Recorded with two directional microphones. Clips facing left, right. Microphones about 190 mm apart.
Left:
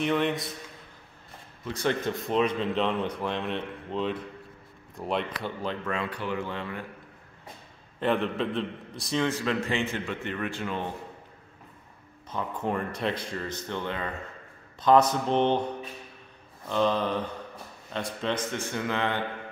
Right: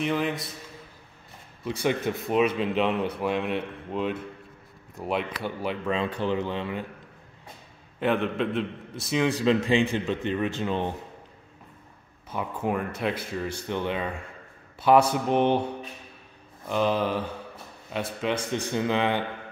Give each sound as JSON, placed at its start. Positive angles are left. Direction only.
{"t": 0.0, "sound": "speech", "side_deg": 0}
{"t": 1.6, "sound": "a man's voice", "side_deg": -10}
{"t": 5.9, "sound": "speech", "side_deg": -20}
{"t": 8.0, "sound": "a man's voice", "side_deg": 0}
{"t": 12.3, "sound": "a man's voice", "side_deg": -10}